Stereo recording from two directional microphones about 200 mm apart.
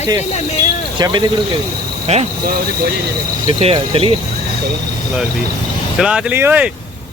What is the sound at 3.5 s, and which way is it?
Speech, 25° right (ahead or behind).